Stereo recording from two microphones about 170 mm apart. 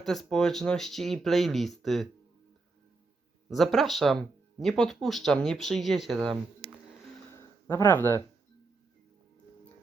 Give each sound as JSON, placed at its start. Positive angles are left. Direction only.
{"t": 0.0, "sound": "speech", "side_deg": 0}
{"t": 3.5, "sound": "speech", "side_deg": 0}
{"t": 7.3, "sound": "a sound", "side_deg": 15}